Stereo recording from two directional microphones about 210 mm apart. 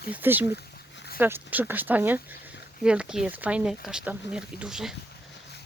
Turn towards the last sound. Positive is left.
turn(degrees=-5)  # may be behind; listen again after turning